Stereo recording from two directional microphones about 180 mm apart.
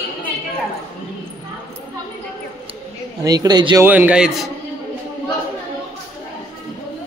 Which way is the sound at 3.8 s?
10° right (ahead or behind).